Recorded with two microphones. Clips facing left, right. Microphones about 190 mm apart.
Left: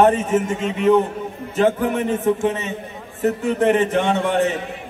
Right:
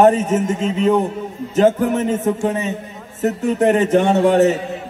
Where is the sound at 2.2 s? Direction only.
40° right (ahead or behind).